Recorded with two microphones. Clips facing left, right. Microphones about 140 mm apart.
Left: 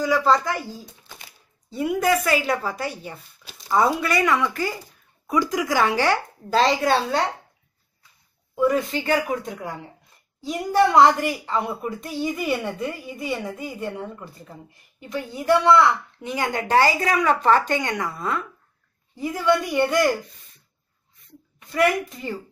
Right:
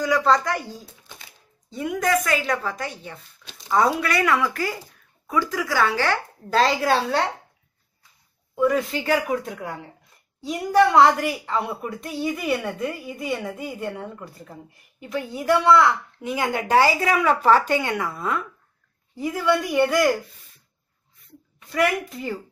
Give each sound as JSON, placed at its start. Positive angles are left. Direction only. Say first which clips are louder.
{"t": 0.0, "sound": "a woman's voice", "louder": "even", "side_deg": 0}
{"t": 1.7, "sound": "a woman's voice", "louder": "left 2 dB", "side_deg": 5}
{"t": 5.2, "sound": "speech", "louder": "left 2 dB", "side_deg": 15}
{"t": 6.5, "sound": "a woman's voice", "louder": "left 1 dB", "side_deg": 0}
{"t": 8.5, "sound": "a woman's voice", "louder": "even", "side_deg": 0}
{"t": 21.7, "sound": "a woman's voice", "louder": "left 2 dB", "side_deg": 0}